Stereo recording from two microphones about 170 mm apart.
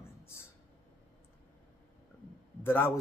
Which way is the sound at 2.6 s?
10° left (ahead or behind).